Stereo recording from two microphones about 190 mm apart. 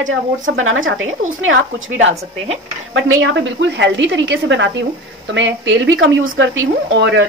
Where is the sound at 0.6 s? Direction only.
90° right.